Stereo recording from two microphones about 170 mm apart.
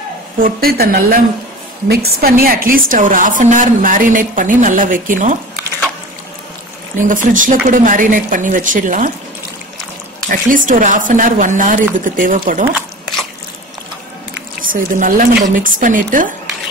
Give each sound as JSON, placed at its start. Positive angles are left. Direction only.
{"t": 0.4, "sound": "a woman's voice", "side_deg": -60}
{"t": 7.0, "sound": "a woman's voice", "side_deg": -50}
{"t": 10.2, "sound": "a woman's voice", "side_deg": -55}
{"t": 14.6, "sound": "a woman's voice", "side_deg": -50}